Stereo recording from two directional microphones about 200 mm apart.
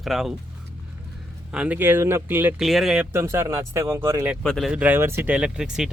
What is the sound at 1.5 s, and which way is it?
Speech, 5° right (ahead or behind).